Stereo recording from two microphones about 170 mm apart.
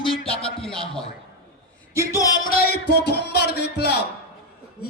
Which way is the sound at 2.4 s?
60° left (ahead or behind).